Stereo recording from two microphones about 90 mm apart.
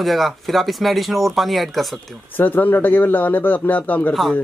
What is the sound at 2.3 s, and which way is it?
Speech, 20° left (ahead or behind).